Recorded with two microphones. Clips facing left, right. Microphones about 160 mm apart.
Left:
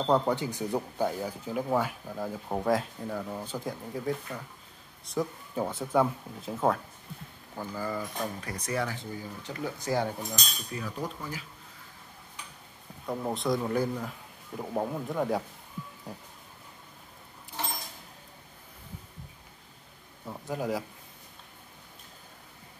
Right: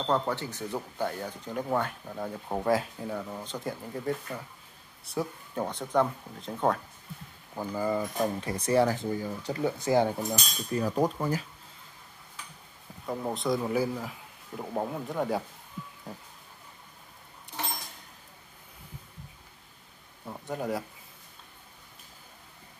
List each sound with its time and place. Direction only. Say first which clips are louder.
0.0 s speech: left 3 dB; 15° left (ahead or behind)
7.5 s speech: right 5 dB; 20° right (ahead or behind)
10.7 s speech: right 10 dB; 40° right (ahead or behind)
13.0 s speech: even; centre (ahead or behind)
20.2 s a sound: left 1 dB; centre (ahead or behind)